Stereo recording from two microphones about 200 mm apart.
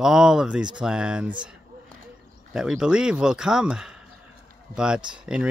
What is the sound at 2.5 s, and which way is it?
Speech, 5° right (ahead or behind).